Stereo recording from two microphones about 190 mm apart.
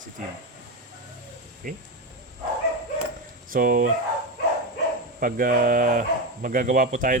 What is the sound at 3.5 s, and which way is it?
Speech, 50° right (ahead or behind).